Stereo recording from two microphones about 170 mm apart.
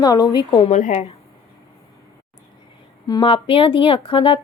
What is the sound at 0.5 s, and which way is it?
Speech, 40° left (ahead or behind).